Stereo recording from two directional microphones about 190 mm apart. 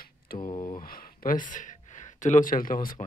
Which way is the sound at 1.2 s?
45° left (ahead or behind).